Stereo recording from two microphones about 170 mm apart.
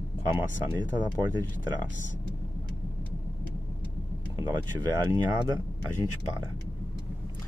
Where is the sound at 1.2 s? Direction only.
25° right (ahead or behind).